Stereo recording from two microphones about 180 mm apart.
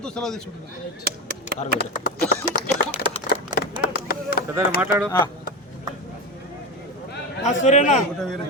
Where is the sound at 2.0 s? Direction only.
55° left (ahead or behind).